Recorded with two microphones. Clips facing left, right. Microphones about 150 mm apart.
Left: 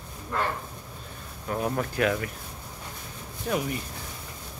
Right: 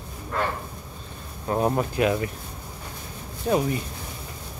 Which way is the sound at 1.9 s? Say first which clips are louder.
Right 3 dB; 20° right (ahead or behind).